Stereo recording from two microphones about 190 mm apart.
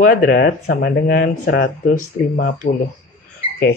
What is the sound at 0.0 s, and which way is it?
Speech, 50° left (ahead or behind).